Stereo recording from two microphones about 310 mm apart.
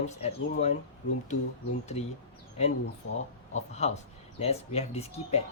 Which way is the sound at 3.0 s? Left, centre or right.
Left.